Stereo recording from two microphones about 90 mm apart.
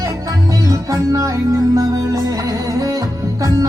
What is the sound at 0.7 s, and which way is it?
Music, 40° right (ahead or behind).